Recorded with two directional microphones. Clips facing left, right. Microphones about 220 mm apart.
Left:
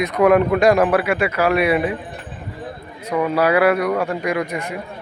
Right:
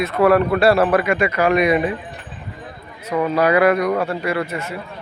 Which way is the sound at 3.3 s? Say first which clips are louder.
Right 1 dB; 10° left (ahead or behind).